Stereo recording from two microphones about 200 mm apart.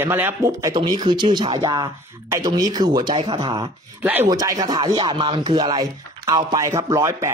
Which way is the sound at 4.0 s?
10° right (ahead or behind).